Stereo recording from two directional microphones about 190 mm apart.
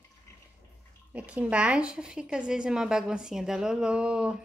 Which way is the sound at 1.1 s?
5° right (ahead or behind).